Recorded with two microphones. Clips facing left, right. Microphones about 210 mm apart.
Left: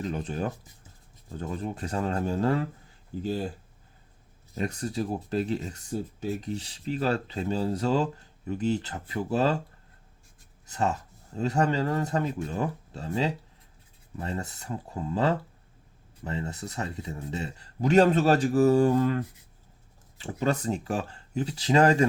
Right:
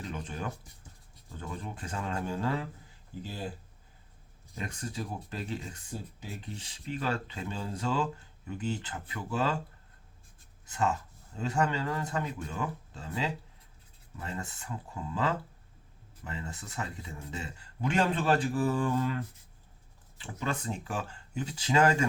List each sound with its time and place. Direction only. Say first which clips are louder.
0.0 s speech: left 7 dB; 40° left (ahead or behind)
4.5 s speech: left 8 dB; 40° left (ahead or behind)
10.7 s speech: left 2 dB; 40° left (ahead or behind)